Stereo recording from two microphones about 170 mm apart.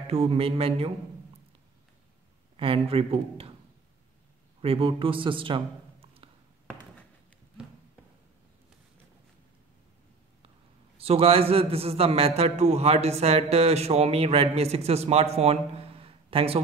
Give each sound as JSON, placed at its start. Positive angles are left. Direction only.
{"t": 0.1, "sound": "a man's voice", "side_deg": -35}
{"t": 2.5, "sound": "a man's voice", "side_deg": -35}
{"t": 4.6, "sound": "a man's voice", "side_deg": -35}
{"t": 11.0, "sound": "a man's voice", "side_deg": -35}